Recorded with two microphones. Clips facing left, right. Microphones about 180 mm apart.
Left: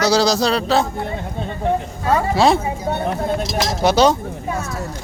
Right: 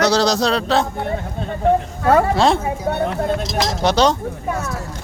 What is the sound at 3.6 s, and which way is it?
Speech, 10° left (ahead or behind).